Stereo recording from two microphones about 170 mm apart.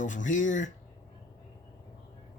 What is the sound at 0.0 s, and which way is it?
Speech, 45° left (ahead or behind).